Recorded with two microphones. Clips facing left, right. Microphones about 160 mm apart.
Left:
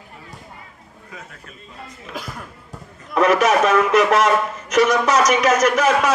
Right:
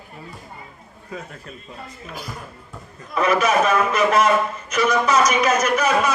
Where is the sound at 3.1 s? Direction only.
80° left.